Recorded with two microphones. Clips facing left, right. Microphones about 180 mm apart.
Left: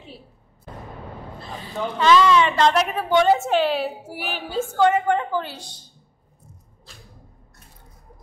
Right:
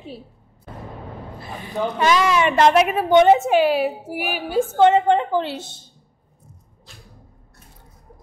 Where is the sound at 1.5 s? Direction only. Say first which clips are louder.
Right 4 dB; 15° right (ahead or behind).